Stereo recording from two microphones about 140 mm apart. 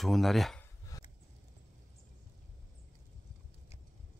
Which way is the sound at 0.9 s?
25° left (ahead or behind).